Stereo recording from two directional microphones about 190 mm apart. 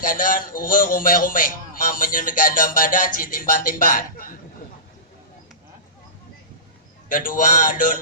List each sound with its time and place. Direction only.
0.0 s a man's voice: 45° left (ahead or behind)
7.1 s a man's voice: 45° left (ahead or behind)